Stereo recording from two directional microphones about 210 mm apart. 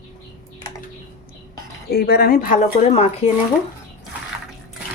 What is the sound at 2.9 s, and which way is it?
Speech, 30° left (ahead or behind).